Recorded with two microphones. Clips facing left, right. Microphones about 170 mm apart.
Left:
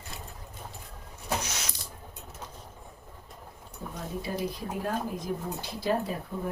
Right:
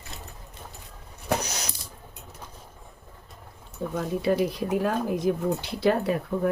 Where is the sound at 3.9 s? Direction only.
70° right (ahead or behind).